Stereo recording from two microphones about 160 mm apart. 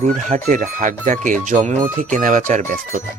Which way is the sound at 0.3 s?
55° right (ahead or behind).